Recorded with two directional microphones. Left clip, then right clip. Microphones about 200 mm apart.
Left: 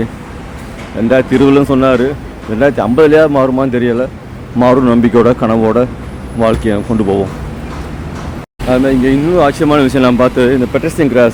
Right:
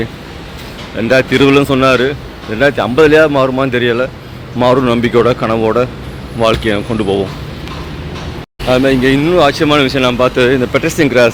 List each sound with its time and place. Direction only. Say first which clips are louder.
1.0 s speech: even; 15° left (ahead or behind)
8.7 s speech: right 1 dB; centre (ahead or behind)